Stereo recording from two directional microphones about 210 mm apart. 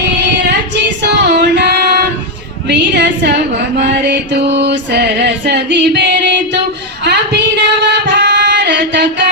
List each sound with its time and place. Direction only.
1.1 s female singing: 55° right (ahead or behind)
2.6 s a sound: 55° right (ahead or behind)
3.8 s music: 55° right (ahead or behind)
7.0 s female singing: 55° right (ahead or behind)